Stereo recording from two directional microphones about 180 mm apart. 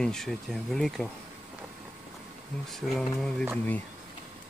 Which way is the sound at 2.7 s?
Centre (ahead or behind).